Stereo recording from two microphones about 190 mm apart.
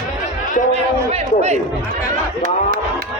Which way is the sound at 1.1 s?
35° right (ahead or behind).